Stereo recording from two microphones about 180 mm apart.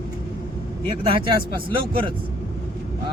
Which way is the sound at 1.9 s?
30° right (ahead or behind).